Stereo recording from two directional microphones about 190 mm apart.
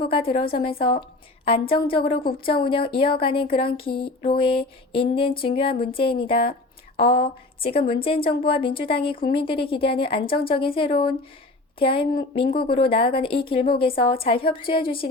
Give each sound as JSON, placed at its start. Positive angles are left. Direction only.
{"t": 0.1, "sound": "a woman's voice", "side_deg": 30}